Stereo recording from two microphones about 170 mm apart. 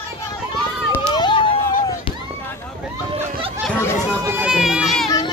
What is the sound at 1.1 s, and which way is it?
Fireworks, 30° left (ahead or behind).